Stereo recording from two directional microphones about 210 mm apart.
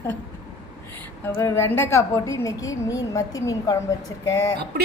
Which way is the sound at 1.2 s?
10° left (ahead or behind).